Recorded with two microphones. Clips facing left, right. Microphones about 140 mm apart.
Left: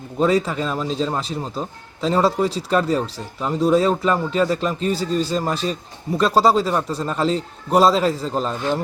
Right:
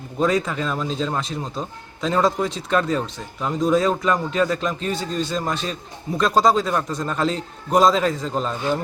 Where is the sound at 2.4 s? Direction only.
35° left (ahead or behind).